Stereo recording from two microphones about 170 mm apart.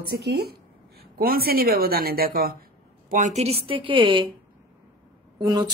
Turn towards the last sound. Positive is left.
turn(degrees=-25)  # may be behind; listen again after turning